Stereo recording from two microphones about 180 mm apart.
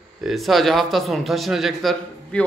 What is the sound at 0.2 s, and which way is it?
A man's voice, centre (ahead or behind).